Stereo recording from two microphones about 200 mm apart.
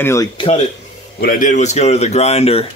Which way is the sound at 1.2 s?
40° left (ahead or behind).